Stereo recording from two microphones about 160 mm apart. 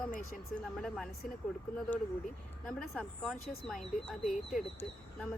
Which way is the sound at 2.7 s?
5° left (ahead or behind).